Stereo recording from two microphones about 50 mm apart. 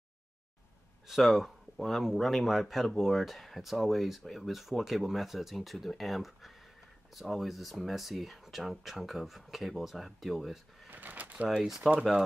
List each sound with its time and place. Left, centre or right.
1.0 s speech: centre
10.9 s a sound: right
11.8 s speech: centre